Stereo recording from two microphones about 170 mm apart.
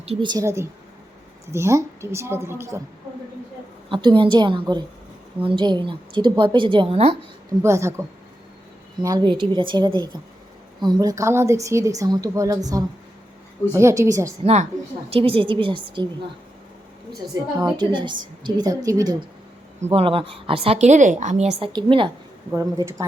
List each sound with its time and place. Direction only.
0.0 s a woman's voice: 30° right (ahead or behind); by 2.8 s 15° right (ahead or behind)
3.8 s a woman's voice: 30° right (ahead or behind)
7.6 s a woman's voice: 15° right (ahead or behind)
14.4 s a woman's voice: 40° right (ahead or behind)
17.3 s a woman's voice: 20° right (ahead or behind)
19.8 s a woman's voice: 35° right (ahead or behind)
21.7 s a woman's voice: 30° right (ahead or behind)
22.5 s a woman's voice: 20° right (ahead or behind)